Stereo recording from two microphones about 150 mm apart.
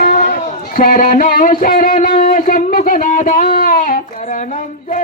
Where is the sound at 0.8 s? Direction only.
75° left (ahead or behind).